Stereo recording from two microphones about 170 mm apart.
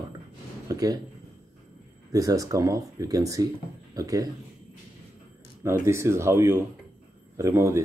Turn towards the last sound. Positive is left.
turn(degrees=-15)  # may be behind; listen again after turning